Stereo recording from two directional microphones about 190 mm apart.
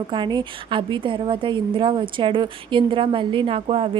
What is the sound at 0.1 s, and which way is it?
A woman's voice, 25° right (ahead or behind).